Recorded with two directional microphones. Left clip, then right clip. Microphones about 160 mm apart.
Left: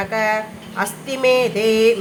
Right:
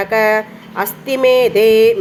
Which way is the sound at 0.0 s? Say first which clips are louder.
Right 6 dB; 30° right (ahead or behind).